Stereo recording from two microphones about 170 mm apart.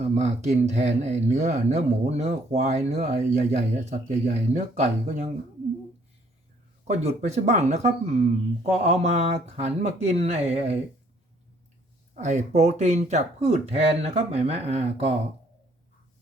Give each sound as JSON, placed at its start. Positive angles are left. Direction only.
{"t": 0.0, "sound": "speech", "side_deg": -40}
{"t": 6.8, "sound": "speech", "side_deg": -40}
{"t": 12.1, "sound": "speech", "side_deg": -45}